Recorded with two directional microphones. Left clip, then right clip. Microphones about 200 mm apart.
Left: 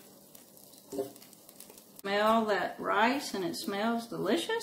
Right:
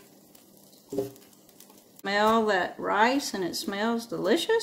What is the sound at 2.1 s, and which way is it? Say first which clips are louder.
Speech: right 4 dB; 55° right (ahead or behind).